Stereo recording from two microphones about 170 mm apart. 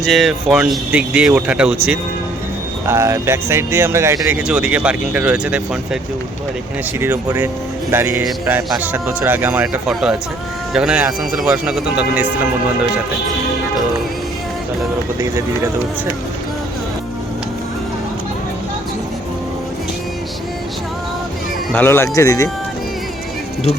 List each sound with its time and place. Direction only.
0.0 s speech: centre (ahead or behind)
2.8 s speech: 15° right (ahead or behind)
7.0 s speech: 15° right (ahead or behind)
15.2 s speech: 15° right (ahead or behind)
21.7 s speech: 10° left (ahead or behind)